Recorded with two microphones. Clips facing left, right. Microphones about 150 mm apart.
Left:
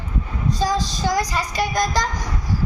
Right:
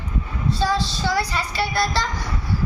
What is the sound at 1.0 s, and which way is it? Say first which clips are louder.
A woman's voice: left 2 dB; 15° left (ahead or behind).